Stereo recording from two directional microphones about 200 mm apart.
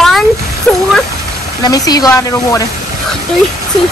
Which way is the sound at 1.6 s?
20° left (ahead or behind).